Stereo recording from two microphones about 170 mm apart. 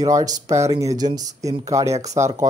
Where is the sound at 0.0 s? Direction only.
20° right (ahead or behind).